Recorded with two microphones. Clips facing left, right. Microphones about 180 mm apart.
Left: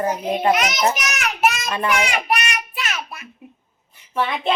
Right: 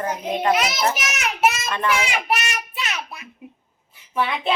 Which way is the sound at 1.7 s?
10° left (ahead or behind).